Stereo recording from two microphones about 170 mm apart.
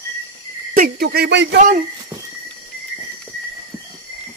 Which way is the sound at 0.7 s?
60° right (ahead or behind).